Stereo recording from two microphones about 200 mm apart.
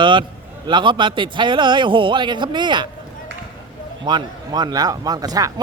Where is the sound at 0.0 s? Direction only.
25° right (ahead or behind).